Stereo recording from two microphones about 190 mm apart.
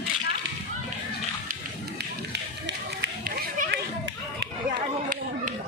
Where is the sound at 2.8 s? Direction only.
50° right (ahead or behind).